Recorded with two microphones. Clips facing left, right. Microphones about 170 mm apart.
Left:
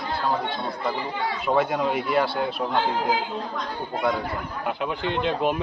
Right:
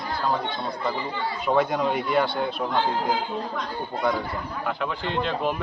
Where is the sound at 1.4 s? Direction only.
5° left (ahead or behind).